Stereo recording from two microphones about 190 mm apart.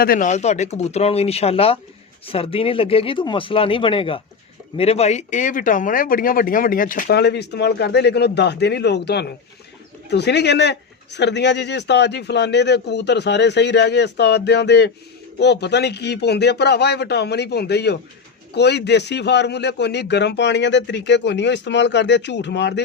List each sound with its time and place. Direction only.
0.0 s speech: 45° left (ahead or behind); by 22.8 s 65° left (ahead or behind)